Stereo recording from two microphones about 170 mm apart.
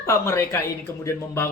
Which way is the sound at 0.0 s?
15° left (ahead or behind).